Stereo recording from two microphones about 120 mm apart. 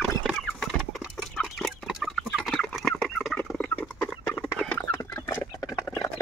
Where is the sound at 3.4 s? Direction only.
15° left (ahead or behind).